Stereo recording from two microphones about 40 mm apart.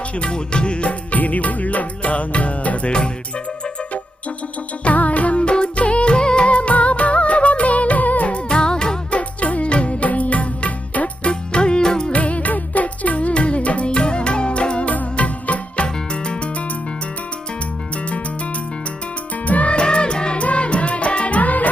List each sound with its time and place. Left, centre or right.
0.2 s music: left
4.8 s music: left
9.0 s music: left
11.3 s music: left
12.1 s music: left
14.8 s music: left
19.5 s music: left
19.7 s music: left